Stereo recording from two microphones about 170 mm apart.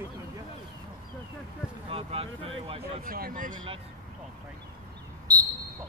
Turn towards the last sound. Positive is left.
turn(degrees=-20)  # may be behind; listen again after turning